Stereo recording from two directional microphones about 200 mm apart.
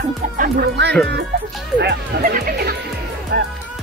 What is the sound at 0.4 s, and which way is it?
Speech, 55° right (ahead or behind).